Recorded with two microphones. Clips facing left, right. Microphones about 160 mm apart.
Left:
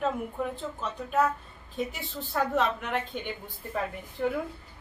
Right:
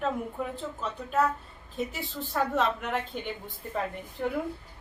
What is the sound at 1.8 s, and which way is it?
A woman's voice, centre (ahead or behind).